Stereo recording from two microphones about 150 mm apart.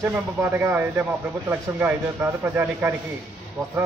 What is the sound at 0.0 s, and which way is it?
Speech, 15° right (ahead or behind).